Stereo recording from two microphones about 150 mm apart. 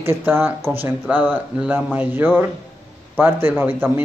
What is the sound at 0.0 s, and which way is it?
Speech, 15° right (ahead or behind).